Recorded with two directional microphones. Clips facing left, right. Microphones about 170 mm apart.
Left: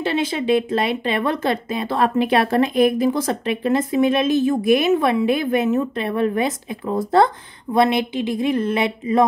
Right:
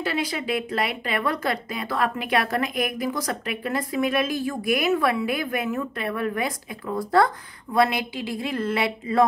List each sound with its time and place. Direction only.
0.0 s speech: 25° left (ahead or behind)